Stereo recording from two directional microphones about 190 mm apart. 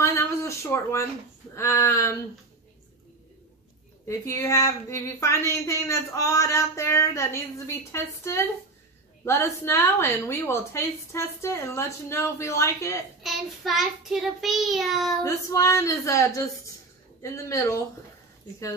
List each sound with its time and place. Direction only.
0.0 s a sound: 15° left (ahead or behind)
1.5 s speech: 15° left (ahead or behind)
4.1 s speech: 15° left (ahead or behind)
13.2 s child singing: centre (ahead or behind)
15.2 s speech: 15° left (ahead or behind)